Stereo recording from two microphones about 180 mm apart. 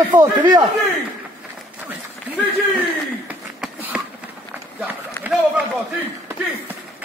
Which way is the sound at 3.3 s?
5° right (ahead or behind).